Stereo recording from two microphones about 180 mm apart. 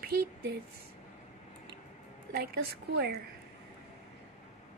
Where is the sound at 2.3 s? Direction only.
60° right (ahead or behind).